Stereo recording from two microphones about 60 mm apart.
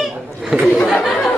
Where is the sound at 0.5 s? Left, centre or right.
Right.